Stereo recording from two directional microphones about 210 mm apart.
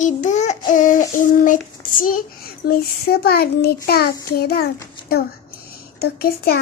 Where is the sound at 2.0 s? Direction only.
40° left (ahead or behind).